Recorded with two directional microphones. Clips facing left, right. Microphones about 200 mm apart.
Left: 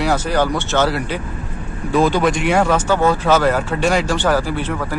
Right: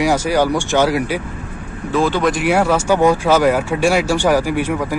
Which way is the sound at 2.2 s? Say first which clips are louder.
Right 1 dB; 5° right (ahead or behind).